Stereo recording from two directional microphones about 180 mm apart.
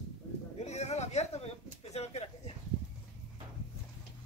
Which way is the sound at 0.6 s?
40° left (ahead or behind).